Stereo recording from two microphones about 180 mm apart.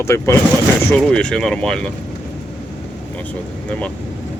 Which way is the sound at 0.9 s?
5° left (ahead or behind).